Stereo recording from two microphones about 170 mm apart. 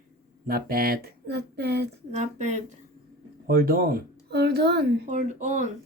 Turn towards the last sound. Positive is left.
turn(degrees=-45)  # may be behind; listen again after turning